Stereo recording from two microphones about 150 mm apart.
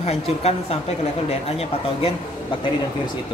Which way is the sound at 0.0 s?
45° left (ahead or behind).